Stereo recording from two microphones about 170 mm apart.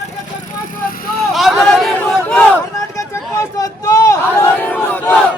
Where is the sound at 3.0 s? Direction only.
20° left (ahead or behind).